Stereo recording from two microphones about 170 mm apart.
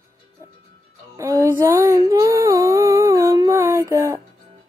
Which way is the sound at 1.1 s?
15° right (ahead or behind).